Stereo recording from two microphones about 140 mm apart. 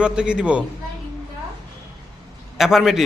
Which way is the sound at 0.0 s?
5° right (ahead or behind).